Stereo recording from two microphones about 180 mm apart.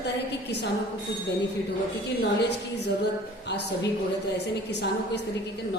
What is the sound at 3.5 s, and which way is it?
A woman's voice, 75° left (ahead or behind).